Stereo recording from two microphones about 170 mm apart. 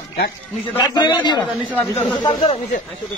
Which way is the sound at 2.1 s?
25° left (ahead or behind).